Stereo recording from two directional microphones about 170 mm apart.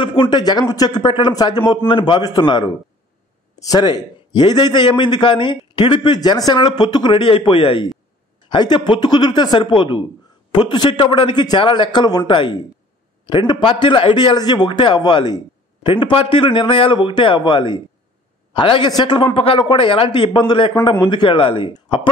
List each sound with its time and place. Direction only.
0.0 s a man's voice: 25° left (ahead or behind)